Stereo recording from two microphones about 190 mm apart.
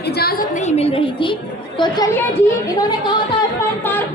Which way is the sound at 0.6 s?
30° left (ahead or behind).